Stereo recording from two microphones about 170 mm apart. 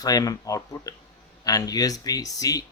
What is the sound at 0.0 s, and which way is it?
Speech, 20° left (ahead or behind).